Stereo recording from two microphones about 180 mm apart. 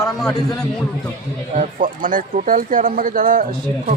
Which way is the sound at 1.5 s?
45° right (ahead or behind).